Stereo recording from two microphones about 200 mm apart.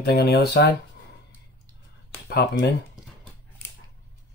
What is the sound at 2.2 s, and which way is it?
Speech, 60° left (ahead or behind).